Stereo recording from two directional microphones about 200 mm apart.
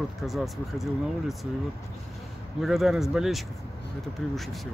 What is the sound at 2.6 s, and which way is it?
Speech, centre (ahead or behind).